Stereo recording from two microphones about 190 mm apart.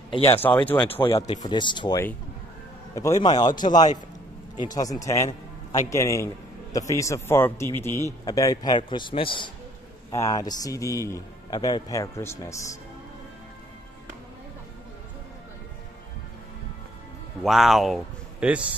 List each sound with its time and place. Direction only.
0.1 s speech: 30° left (ahead or behind)
0.7 s a man's voice: 10° left (ahead or behind)
1.0 s a man's voice: 20° left (ahead or behind)
17.4 s speech: centre (ahead or behind)